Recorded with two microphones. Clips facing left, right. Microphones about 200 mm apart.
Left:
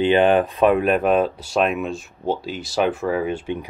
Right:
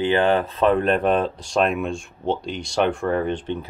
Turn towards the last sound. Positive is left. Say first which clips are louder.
# even
turn(degrees=5)  # may be behind; listen again after turning